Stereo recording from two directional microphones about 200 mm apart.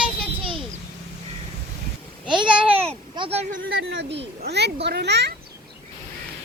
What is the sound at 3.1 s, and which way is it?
Speech, 30° right (ahead or behind).